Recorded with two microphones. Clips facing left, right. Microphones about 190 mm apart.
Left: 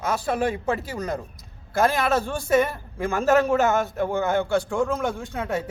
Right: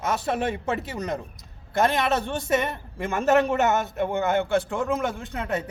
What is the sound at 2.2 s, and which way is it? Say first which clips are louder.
A man's voice: left 3 dB; 20° right (ahead or behind).